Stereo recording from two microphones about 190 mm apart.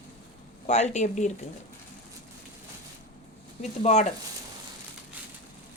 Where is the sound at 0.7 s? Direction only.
35° left (ahead or behind).